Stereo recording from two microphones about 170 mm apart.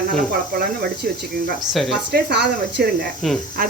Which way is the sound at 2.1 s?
70° right (ahead or behind).